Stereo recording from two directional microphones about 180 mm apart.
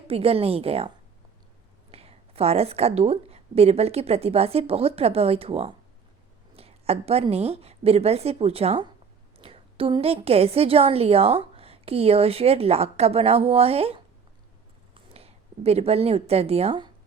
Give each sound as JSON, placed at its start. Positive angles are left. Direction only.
{"t": 0.1, "sound": "a woman's voice", "side_deg": -30}